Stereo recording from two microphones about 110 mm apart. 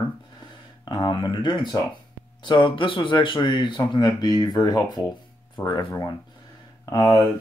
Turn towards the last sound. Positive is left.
turn(degrees=35)  # may be behind; listen again after turning